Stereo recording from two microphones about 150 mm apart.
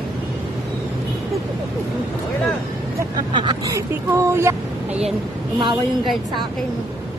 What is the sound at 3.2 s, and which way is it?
Speech, 30° right (ahead or behind).